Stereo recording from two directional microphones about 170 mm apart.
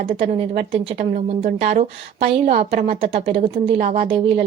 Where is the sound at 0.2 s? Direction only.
40° right (ahead or behind).